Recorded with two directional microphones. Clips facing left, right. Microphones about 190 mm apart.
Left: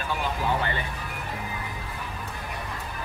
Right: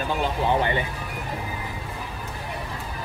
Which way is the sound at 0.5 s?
20° right (ahead or behind).